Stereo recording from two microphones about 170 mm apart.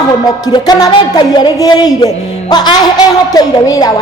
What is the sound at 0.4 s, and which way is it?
Speech, 25° left (ahead or behind).